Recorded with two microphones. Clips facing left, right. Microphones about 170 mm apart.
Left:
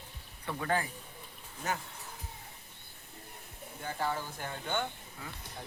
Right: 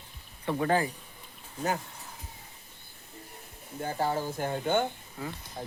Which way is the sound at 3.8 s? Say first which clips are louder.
Right 6 dB; 40° right (ahead or behind).